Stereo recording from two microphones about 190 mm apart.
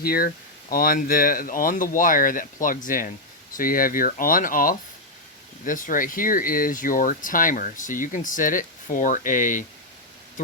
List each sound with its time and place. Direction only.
0.0 s speech: 50° left (ahead or behind)